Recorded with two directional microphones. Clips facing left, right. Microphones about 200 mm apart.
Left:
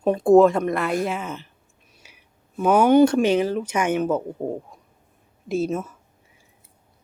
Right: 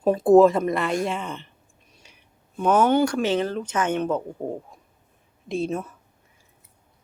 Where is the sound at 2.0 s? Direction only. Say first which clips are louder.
Left 2 dB; 5° left (ahead or behind).